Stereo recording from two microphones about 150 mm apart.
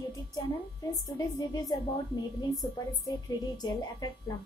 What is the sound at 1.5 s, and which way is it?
Speech, 25° left (ahead or behind).